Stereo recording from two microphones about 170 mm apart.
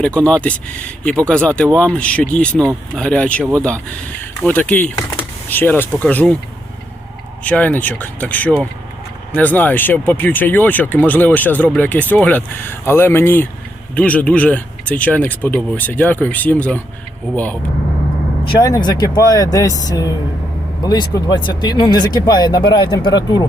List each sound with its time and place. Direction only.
0.0 s speech: 5° left (ahead or behind)
4.4 s speech: 10° left (ahead or behind)
7.4 s speech: 10° left (ahead or behind)
18.4 s speech: 25° left (ahead or behind)